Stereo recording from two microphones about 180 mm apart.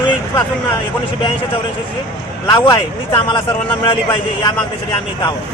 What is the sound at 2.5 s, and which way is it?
Speech, 20° left (ahead or behind).